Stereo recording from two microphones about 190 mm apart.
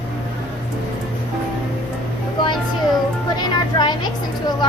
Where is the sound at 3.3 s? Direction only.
20° left (ahead or behind).